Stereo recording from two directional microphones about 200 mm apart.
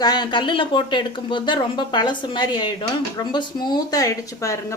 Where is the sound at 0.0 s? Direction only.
20° left (ahead or behind).